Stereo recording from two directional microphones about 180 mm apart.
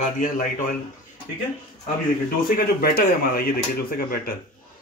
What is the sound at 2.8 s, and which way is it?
Speech, 55° left (ahead or behind).